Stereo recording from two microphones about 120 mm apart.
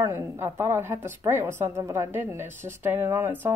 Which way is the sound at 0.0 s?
20° right (ahead or behind).